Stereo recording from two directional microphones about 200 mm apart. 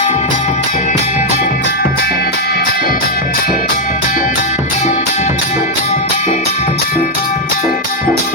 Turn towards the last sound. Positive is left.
turn(degrees=35)  # may be behind; listen again after turning